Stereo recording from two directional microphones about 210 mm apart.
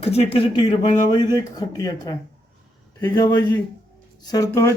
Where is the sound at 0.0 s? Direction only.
30° left (ahead or behind).